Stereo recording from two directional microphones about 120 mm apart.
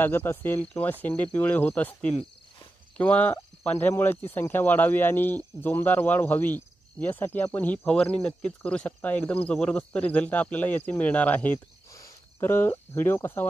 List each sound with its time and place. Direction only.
0.0 s speech: 20° left (ahead or behind)
11.9 s speech: 25° left (ahead or behind)